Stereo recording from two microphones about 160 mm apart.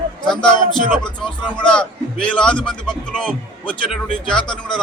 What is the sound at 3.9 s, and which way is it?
Speech, 30° left (ahead or behind).